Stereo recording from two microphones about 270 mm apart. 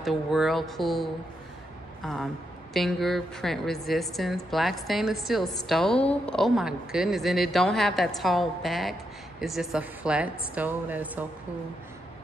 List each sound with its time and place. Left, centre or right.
0.0 s a woman's voice: centre
2.7 s a woman's voice: centre